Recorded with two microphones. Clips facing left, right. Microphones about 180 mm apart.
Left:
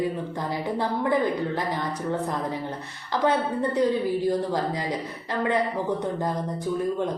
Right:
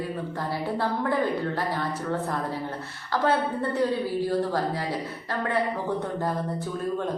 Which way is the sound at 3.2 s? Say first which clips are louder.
Left 2 dB; 15° left (ahead or behind).